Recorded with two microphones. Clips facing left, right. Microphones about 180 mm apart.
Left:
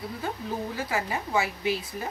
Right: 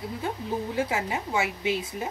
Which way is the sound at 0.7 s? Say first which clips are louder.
Right 4 dB; 20° right (ahead or behind).